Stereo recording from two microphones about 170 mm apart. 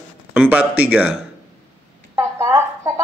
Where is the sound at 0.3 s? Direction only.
10° right (ahead or behind).